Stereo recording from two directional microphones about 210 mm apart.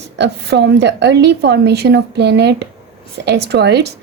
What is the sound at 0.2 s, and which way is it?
A woman's voice, 55° right (ahead or behind).